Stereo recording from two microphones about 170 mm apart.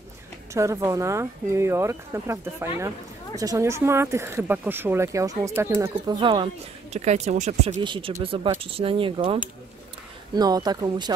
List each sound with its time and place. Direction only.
0.5 s speech: 15° right (ahead or behind); by 7.8 s 45° right (ahead or behind)
7.8 s speech: 30° right (ahead or behind)